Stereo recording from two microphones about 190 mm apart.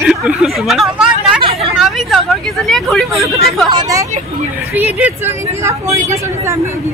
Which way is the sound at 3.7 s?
20° right (ahead or behind).